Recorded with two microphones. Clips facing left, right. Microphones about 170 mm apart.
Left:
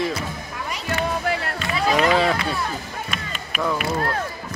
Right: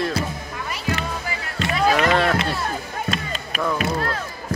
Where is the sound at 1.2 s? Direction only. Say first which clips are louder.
Left 7 dB; 65° left (ahead or behind).